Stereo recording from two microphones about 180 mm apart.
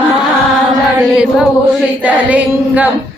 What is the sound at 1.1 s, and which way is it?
Mantra, 5° right (ahead or behind).